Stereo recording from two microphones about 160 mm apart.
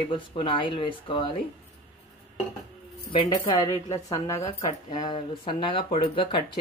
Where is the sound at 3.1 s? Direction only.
35° left (ahead or behind).